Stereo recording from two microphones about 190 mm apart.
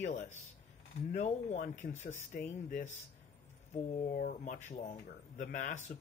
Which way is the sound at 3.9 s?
45° left (ahead or behind).